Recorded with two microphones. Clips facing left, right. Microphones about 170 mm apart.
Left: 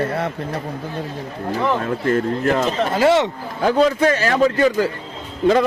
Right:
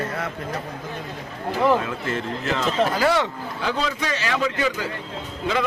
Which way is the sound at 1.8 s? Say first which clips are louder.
Left 8 dB; 45° left (ahead or behind).